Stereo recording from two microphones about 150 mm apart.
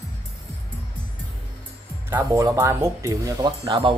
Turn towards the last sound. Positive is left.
turn(degrees=-30)  # may be behind; listen again after turning